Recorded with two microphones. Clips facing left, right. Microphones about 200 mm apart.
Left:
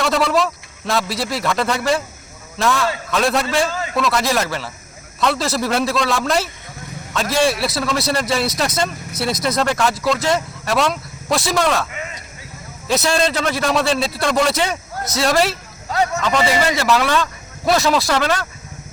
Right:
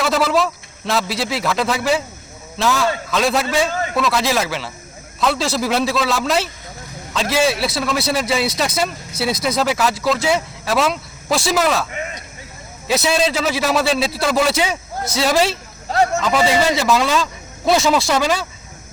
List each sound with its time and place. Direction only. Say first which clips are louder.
0.0 s a sound: even; centre (ahead or behind)
1.1 s a man's voice: even; centre (ahead or behind)
12.9 s speech: even; 5° right (ahead or behind)
15.4 s speech: right 1 dB; 30° right (ahead or behind)
16.2 s speech: right 1 dB; 5° right (ahead or behind)
16.8 s a man's voice: even; 15° right (ahead or behind)
17.7 s speech: right 1 dB; centre (ahead or behind)
18.2 s a man's voice: right 1 dB; 10° right (ahead or behind)